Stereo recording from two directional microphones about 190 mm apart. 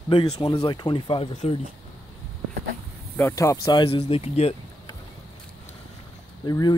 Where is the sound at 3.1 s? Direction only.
15° left (ahead or behind); by 4.5 s 35° left (ahead or behind).